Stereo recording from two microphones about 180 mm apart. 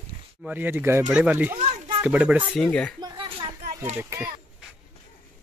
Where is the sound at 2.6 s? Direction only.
5° left (ahead or behind).